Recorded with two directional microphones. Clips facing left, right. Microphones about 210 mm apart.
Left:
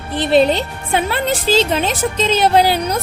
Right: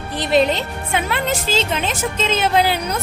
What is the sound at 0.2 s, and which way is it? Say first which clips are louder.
A woman's voice: left 3 dB; 30° left (ahead or behind).